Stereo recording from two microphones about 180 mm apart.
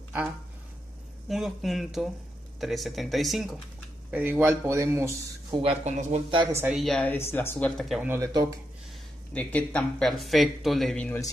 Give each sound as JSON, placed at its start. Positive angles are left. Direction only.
{"t": 1.3, "sound": "speech", "side_deg": 0}
{"t": 5.5, "sound": "speech", "side_deg": -30}
{"t": 6.5, "sound": "a woman's voice", "side_deg": -5}
{"t": 7.5, "sound": "speech", "side_deg": 5}
{"t": 8.0, "sound": "speech", "side_deg": -15}
{"t": 9.3, "sound": "speech", "side_deg": 10}